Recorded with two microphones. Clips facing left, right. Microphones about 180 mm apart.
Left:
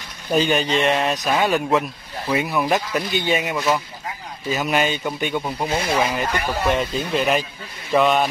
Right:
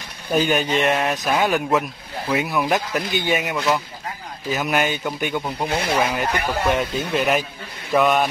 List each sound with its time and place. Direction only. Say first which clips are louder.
0.3 s speech: even; centre (ahead or behind)